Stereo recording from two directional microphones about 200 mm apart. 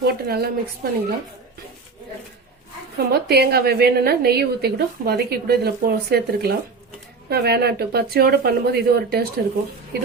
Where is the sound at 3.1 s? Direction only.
55° right (ahead or behind).